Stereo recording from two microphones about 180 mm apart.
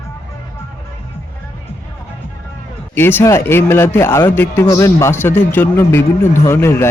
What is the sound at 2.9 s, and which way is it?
A man's voice, 10° left (ahead or behind).